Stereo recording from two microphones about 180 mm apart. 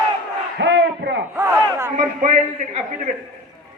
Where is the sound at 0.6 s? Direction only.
85° right.